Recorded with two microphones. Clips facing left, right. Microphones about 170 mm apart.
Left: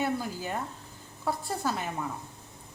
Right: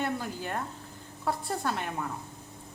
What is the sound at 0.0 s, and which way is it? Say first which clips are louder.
A woman's voice: left 2 dB; 5° left (ahead or behind).